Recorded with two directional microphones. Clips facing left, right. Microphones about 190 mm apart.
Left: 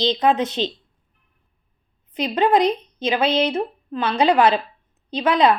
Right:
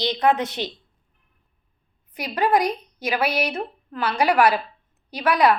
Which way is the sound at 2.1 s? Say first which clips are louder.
Left 3 dB; 20° left (ahead or behind).